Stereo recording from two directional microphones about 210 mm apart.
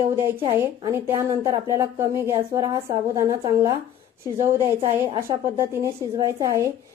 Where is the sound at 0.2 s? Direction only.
10° right (ahead or behind).